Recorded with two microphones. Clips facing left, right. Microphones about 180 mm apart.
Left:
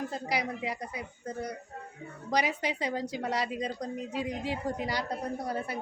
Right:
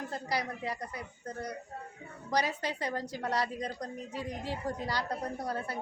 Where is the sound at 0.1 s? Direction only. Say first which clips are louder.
Left 2 dB; 15° left (ahead or behind).